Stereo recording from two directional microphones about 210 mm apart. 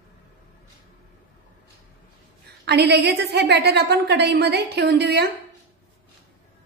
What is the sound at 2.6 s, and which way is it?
A woman's voice, 50° right (ahead or behind).